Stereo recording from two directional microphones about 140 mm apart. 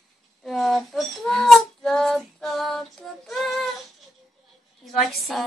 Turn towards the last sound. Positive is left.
turn(degrees=0)  # may be behind; listen again after turning